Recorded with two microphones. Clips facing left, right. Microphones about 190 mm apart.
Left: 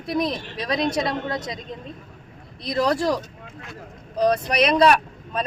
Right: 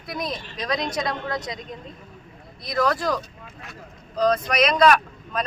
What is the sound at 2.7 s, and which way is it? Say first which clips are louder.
Speech: left 2 dB; 30° left (ahead or behind).